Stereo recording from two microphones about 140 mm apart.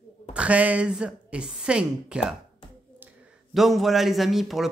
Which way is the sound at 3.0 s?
10° right (ahead or behind).